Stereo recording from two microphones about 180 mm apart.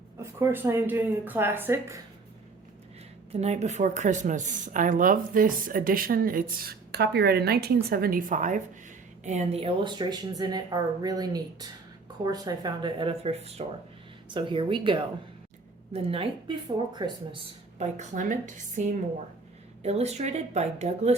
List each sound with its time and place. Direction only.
0.2 s speech: 15° right (ahead or behind)
3.4 s speech: 40° right (ahead or behind)
17.7 s speech: 40° right (ahead or behind)
19.8 s a woman's voice: 35° right (ahead or behind)